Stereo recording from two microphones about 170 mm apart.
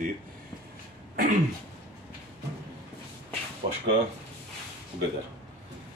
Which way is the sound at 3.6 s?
35° right (ahead or behind).